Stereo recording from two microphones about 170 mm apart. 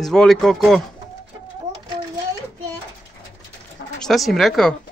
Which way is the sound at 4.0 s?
Centre (ahead or behind).